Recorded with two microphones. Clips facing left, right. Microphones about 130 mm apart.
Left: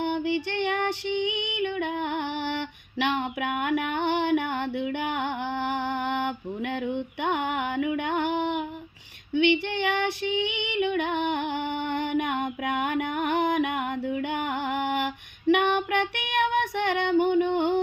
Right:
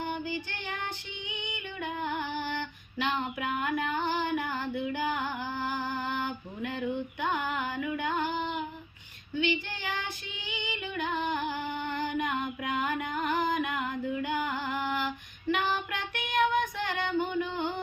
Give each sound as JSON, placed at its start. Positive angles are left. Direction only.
{"t": 0.0, "sound": "female singing", "side_deg": 70}